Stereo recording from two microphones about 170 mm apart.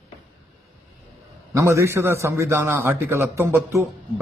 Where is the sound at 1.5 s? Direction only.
15° right (ahead or behind).